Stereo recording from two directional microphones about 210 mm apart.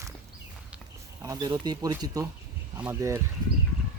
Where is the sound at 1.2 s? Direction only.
15° right (ahead or behind).